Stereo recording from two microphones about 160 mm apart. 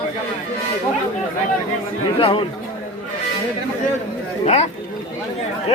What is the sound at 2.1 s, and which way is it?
Speech, 35° left (ahead or behind).